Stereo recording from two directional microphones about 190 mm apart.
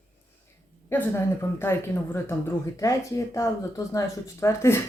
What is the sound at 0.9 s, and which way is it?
Speech, 10° left (ahead or behind).